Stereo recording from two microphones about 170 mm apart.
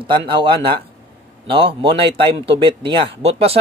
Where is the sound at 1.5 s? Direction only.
30° right (ahead or behind).